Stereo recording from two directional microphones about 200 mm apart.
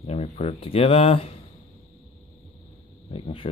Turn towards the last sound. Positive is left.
turn(degrees=25)  # may be behind; listen again after turning